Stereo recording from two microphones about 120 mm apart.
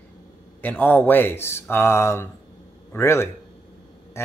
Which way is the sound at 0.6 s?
15° left (ahead or behind).